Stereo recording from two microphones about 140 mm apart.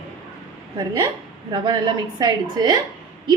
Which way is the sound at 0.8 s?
25° right (ahead or behind).